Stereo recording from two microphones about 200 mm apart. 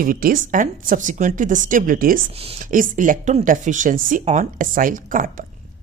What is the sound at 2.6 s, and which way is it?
Speech, 40° right (ahead or behind).